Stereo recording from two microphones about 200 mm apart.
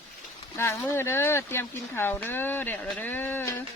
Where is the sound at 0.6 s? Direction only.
10° left (ahead or behind).